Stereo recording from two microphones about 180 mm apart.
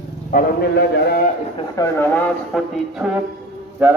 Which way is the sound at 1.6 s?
15° left (ahead or behind).